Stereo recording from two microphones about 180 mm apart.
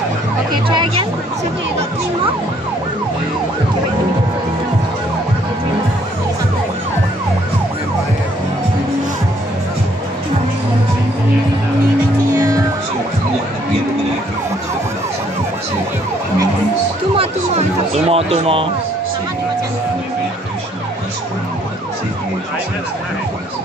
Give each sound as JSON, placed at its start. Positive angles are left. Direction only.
{"t": 0.7, "sound": "speech", "side_deg": -30}
{"t": 12.4, "sound": "music", "side_deg": -15}
{"t": 17.2, "sound": "music", "side_deg": -35}